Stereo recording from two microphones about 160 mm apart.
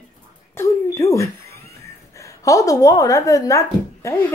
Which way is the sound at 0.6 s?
15° left (ahead or behind).